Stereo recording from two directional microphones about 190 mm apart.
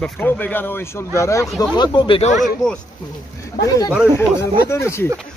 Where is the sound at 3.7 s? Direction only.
20° left (ahead or behind).